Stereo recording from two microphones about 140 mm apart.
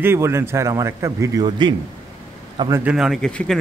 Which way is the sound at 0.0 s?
20° right (ahead or behind).